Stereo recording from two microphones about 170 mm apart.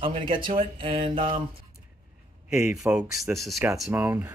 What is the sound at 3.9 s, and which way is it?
Speech, 10° right (ahead or behind).